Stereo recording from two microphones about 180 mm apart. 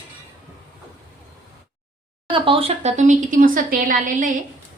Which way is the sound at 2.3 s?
30° right (ahead or behind).